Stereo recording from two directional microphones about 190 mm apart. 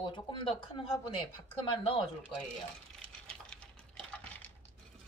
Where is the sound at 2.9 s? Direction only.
5° left (ahead or behind).